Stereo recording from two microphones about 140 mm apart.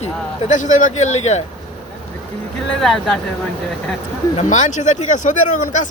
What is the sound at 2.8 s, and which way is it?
Speech, 5° left (ahead or behind).